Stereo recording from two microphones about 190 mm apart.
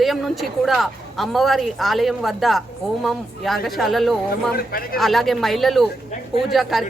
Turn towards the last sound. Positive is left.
turn(degrees=0)  # may be behind; listen again after turning